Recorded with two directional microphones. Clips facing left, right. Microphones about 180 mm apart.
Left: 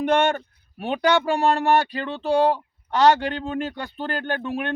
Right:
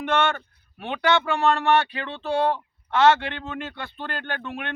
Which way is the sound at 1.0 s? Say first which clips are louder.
Left 1 dB; 35° left (ahead or behind).